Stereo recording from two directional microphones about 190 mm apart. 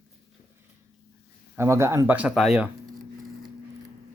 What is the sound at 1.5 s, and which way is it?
Speech, 15° right (ahead or behind).